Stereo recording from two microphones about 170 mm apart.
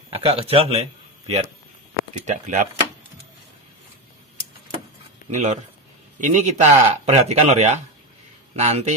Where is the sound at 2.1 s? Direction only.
45° right (ahead or behind).